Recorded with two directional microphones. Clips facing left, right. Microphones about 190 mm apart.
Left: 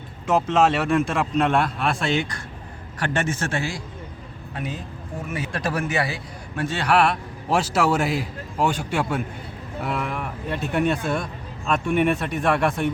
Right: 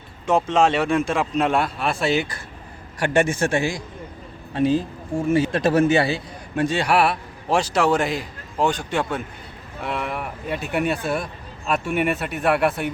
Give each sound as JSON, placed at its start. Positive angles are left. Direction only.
{"t": 0.3, "sound": "a man's voice", "side_deg": 5}
{"t": 4.5, "sound": "speech", "side_deg": -30}
{"t": 6.7, "sound": "speech", "side_deg": -10}